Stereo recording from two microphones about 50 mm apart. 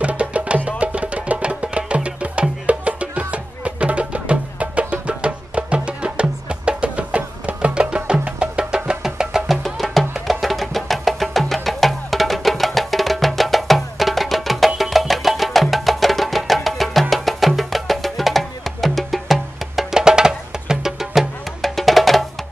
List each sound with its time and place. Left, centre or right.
0.0 s music: right; by 9.6 s centre
9.6 s music: centre
21.5 s music: centre